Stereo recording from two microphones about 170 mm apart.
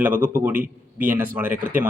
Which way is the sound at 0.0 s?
10° right (ahead or behind).